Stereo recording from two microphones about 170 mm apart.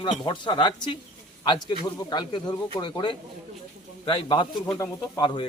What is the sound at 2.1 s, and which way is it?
A man's voice, 25° left (ahead or behind).